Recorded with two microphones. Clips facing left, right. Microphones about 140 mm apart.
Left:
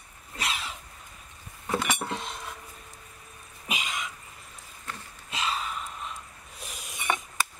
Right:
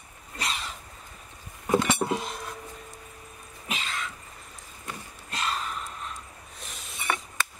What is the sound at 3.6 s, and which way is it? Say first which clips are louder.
Cough: even; 10° left (ahead or behind).